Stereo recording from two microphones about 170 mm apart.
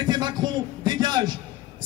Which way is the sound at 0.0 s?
25° right (ahead or behind).